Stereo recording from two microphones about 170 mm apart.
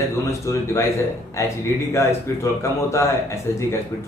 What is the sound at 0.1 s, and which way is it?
Speech, 15° left (ahead or behind).